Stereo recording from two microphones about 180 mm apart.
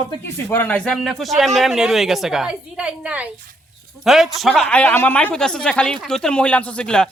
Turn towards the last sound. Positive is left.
turn(degrees=5)  # may be behind; listen again after turning